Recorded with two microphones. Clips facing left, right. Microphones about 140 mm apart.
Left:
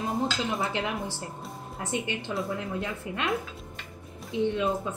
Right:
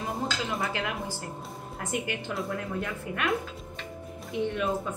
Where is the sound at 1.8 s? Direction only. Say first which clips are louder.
Left 1 dB; 25° left (ahead or behind).